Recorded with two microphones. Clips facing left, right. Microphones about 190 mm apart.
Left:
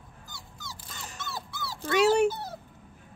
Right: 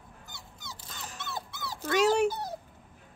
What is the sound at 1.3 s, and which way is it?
Dog, 20° right (ahead or behind).